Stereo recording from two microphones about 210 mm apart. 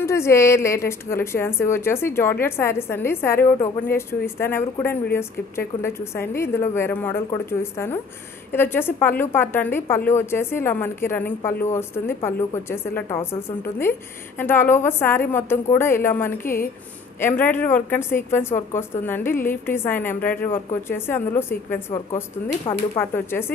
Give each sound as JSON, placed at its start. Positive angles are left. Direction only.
{"t": 0.0, "sound": "a woman's voice", "side_deg": 15}
{"t": 8.5, "sound": "a woman's voice", "side_deg": 10}
{"t": 22.9, "sound": "a woman's voice", "side_deg": 10}